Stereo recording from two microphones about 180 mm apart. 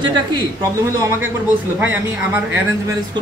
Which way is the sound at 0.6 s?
15° right (ahead or behind).